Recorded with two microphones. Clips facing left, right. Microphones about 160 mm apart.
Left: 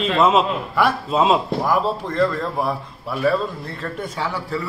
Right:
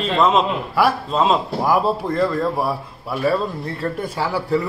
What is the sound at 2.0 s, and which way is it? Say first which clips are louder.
Speech: right 4 dB; 10° right (ahead or behind).